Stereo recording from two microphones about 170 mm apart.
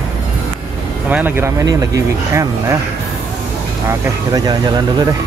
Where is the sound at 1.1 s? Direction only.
10° right (ahead or behind).